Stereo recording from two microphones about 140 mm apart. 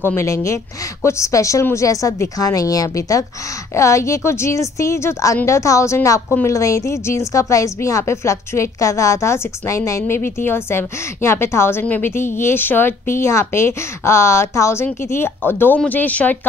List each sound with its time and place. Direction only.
0.0 s a woman's voice: 20° left (ahead or behind)